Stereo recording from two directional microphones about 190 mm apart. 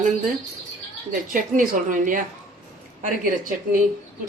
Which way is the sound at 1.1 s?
45° right (ahead or behind).